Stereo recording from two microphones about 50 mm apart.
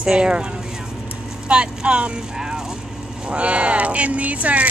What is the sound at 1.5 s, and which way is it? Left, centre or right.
Speech, right.